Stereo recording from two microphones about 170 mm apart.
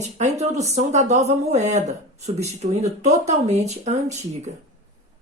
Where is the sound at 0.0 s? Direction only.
40° right (ahead or behind).